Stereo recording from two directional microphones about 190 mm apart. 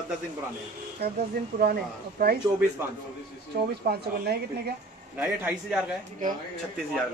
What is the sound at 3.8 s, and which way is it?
Speech, 55° right (ahead or behind).